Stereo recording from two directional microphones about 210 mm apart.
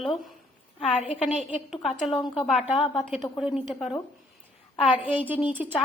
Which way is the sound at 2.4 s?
Centre (ahead or behind).